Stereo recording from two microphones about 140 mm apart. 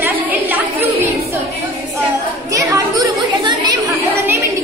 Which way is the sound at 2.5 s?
25° right (ahead or behind).